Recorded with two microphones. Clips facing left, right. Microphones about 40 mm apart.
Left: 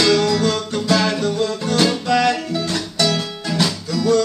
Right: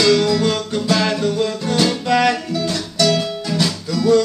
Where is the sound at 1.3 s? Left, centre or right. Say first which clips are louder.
Even; centre.